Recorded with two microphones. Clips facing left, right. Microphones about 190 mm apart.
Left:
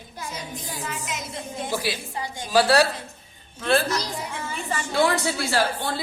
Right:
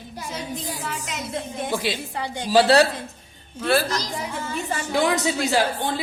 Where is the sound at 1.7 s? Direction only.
25° right (ahead or behind).